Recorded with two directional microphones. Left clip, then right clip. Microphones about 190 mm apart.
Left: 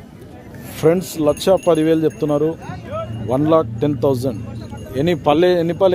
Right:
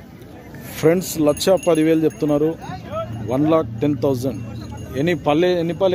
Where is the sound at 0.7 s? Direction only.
Centre (ahead or behind).